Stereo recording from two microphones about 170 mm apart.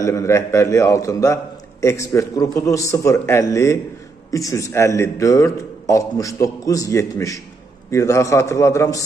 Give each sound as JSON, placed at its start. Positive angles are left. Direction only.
{"t": 0.0, "sound": "a man's voice", "side_deg": 15}